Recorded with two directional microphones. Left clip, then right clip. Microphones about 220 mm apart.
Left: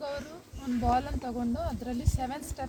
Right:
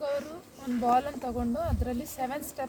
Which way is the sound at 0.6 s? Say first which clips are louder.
Right 3 dB; 15° right (ahead or behind).